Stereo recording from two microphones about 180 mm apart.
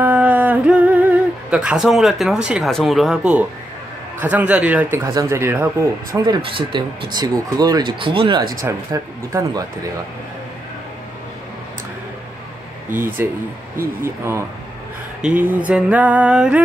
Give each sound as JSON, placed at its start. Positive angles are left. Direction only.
{"t": 0.0, "sound": "a sound", "side_deg": -10}
{"t": 4.2, "sound": "mantra", "side_deg": -10}
{"t": 6.2, "sound": "speech", "side_deg": -25}
{"t": 8.6, "sound": "speech", "side_deg": -15}
{"t": 13.2, "sound": "mantra", "side_deg": -10}